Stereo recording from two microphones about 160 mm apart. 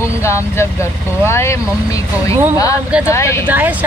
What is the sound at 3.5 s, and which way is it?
Speech, 10° right (ahead or behind).